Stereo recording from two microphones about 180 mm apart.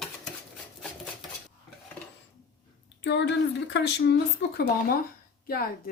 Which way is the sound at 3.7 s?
75° left (ahead or behind).